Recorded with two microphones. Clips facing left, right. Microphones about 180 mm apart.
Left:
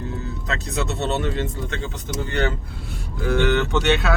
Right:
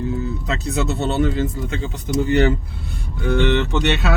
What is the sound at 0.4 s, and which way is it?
Speech, centre (ahead or behind).